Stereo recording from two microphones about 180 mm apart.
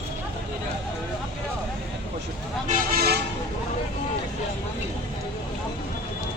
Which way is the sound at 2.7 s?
55° right (ahead or behind).